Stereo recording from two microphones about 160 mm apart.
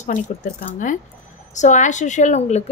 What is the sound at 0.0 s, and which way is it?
Speech, 50° left (ahead or behind).